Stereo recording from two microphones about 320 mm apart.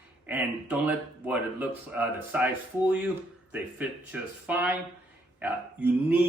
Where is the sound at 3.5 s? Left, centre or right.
Centre.